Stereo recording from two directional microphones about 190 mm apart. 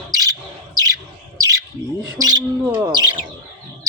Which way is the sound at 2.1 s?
20° right (ahead or behind).